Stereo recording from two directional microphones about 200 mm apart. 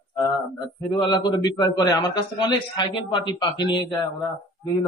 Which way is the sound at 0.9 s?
20° left (ahead or behind).